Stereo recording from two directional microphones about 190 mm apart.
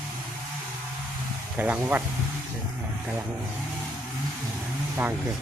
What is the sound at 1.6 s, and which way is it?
Speech, 10° right (ahead or behind).